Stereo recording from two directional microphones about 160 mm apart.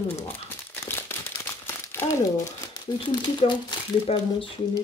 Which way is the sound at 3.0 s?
30° left (ahead or behind).